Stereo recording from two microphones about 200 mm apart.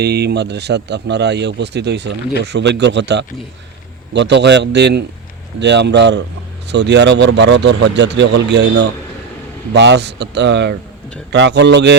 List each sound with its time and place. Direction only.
0.0 s a man's voice: 55° right (ahead or behind)